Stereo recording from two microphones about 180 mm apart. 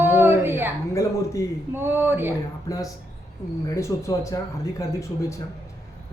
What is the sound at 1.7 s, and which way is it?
Speech, 10° right (ahead or behind).